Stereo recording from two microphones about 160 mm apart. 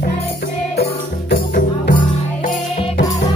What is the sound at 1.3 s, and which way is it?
Music, 55° left (ahead or behind).